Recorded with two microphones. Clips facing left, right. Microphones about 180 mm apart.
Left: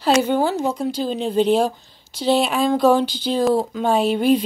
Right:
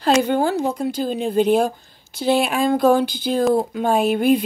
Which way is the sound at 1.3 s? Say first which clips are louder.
Even; 50° right (ahead or behind).